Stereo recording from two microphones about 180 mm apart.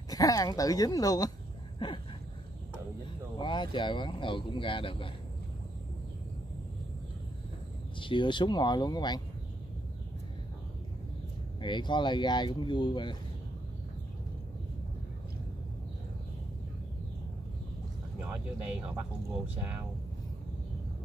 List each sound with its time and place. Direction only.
0.1 s speech: 20° left (ahead or behind)
3.3 s speech: 25° left (ahead or behind)
8.0 s speech: 25° left (ahead or behind)
11.6 s speech: 25° left (ahead or behind)
18.9 s speech: 10° right (ahead or behind)